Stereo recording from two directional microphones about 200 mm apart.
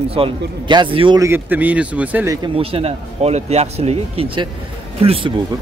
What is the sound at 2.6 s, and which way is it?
Speech, 30° right (ahead or behind).